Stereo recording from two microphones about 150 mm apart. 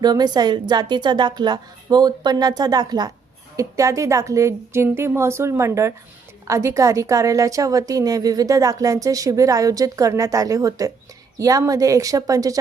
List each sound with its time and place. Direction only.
0.0 s a woman's voice: 25° right (ahead or behind)